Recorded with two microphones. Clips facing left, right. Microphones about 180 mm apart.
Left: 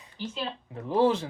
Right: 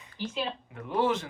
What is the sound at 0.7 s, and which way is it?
Speech, 30° left (ahead or behind).